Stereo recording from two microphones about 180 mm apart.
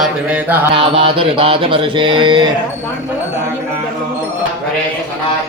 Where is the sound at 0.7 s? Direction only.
30° right (ahead or behind).